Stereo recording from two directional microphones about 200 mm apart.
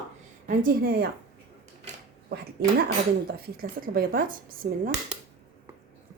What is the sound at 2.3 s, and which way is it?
A woman's voice, 50° right (ahead or behind).